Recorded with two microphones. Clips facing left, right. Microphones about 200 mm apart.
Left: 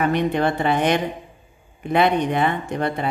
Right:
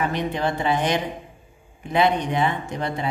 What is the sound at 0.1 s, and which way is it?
Speech, 60° left (ahead or behind).